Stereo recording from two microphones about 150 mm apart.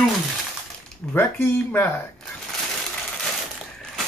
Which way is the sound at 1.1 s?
15° left (ahead or behind).